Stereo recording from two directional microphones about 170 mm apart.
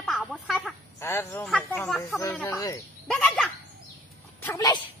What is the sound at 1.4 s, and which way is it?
Fowl, 5° left (ahead or behind).